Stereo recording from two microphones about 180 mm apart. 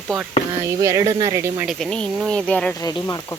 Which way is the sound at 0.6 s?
15° right (ahead or behind).